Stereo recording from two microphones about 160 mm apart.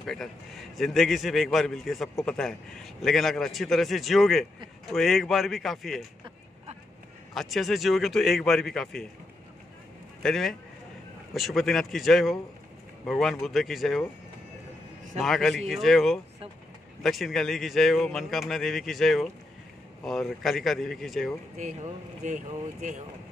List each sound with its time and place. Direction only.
0.0 s a man's voice: centre (ahead or behind)
7.3 s a man's voice: centre (ahead or behind)
10.2 s a man's voice: centre (ahead or behind)
15.1 s a man's voice: centre (ahead or behind)
21.6 s speech: 50° right (ahead or behind)